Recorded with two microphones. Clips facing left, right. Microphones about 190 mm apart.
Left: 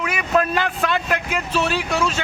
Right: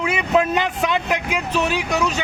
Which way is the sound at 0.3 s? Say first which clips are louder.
Right 1 dB; 15° right (ahead or behind).